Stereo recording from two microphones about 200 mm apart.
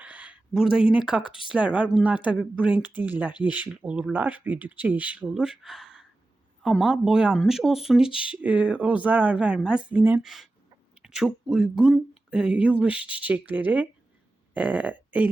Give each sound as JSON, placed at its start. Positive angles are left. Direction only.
{"t": 0.0, "sound": "a sound", "side_deg": -5}
{"t": 1.2, "sound": "speech", "side_deg": 25}
{"t": 1.5, "sound": "speech", "side_deg": -5}